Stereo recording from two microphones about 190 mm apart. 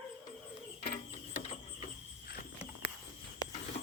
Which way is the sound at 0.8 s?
40° left (ahead or behind).